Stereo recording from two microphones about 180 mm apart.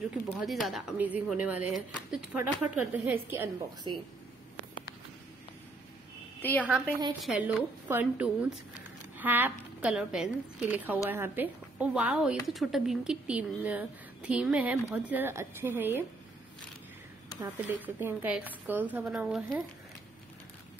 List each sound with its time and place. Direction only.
0.3 s a woman's voice: centre (ahead or behind)
3.9 s speech: 25° right (ahead or behind)
6.4 s a woman's voice: 10° left (ahead or behind)
7.2 s a woman's voice: 5° right (ahead or behind)
17.4 s a woman's voice: 10° right (ahead or behind)